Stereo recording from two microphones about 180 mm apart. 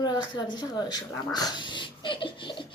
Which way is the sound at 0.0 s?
25° left (ahead or behind).